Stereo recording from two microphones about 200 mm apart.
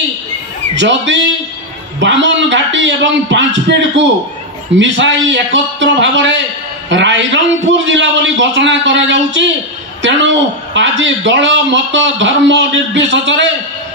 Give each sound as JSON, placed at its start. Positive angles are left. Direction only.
{"t": 0.7, "sound": "a man's voice", "side_deg": -65}
{"t": 10.7, "sound": "a man's voice", "side_deg": -65}